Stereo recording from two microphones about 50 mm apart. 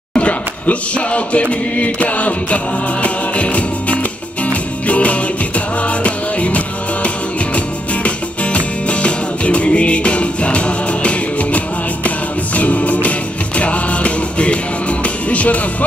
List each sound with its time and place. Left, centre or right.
0.1 s music: left
8.5 s music: left